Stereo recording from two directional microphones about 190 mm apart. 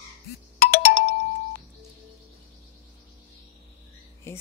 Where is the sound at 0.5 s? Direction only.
50° left (ahead or behind).